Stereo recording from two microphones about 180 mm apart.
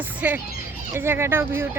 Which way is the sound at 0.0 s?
10° right (ahead or behind).